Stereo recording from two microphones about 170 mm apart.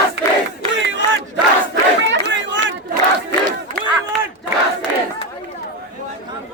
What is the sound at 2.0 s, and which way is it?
Chatter, 90° right.